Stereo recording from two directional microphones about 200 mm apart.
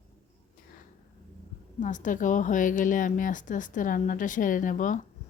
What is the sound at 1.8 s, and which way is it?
A woman's voice, 40° left (ahead or behind).